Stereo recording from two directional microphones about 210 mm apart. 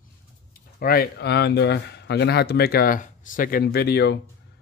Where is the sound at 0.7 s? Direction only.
45° left (ahead or behind).